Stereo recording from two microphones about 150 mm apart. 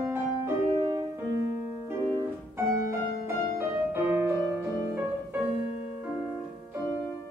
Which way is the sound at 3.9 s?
15° right (ahead or behind).